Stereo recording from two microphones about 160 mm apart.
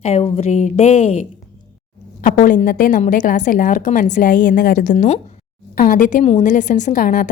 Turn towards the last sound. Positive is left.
turn(degrees=55)  # may be behind; listen again after turning